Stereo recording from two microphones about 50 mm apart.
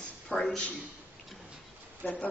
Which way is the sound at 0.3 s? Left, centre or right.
Centre.